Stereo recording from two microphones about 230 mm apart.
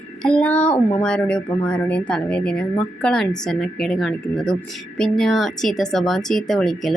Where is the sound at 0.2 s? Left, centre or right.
Centre.